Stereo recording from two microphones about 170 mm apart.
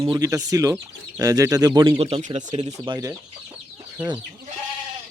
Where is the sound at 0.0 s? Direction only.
20° right (ahead or behind); by 2.4 s 35° right (ahead or behind).